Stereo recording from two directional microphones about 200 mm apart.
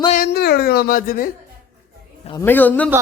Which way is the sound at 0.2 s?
50° left (ahead or behind).